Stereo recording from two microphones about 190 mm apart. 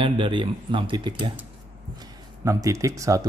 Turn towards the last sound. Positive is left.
turn(degrees=-15)  # may be behind; listen again after turning